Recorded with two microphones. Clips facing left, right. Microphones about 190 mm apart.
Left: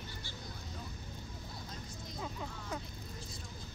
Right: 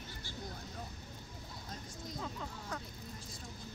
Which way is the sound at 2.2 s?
10° left (ahead or behind).